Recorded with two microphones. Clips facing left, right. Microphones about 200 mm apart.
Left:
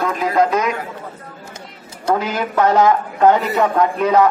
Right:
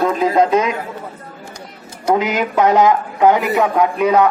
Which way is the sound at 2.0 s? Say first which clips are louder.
Right 3 dB; 15° right (ahead or behind).